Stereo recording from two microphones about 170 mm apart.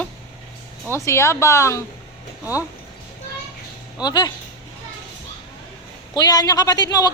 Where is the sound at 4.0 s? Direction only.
25° left (ahead or behind).